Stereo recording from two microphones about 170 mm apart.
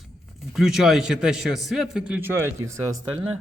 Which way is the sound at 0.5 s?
Centre (ahead or behind).